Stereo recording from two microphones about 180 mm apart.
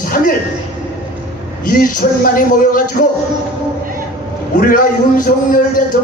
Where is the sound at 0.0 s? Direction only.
50° left (ahead or behind).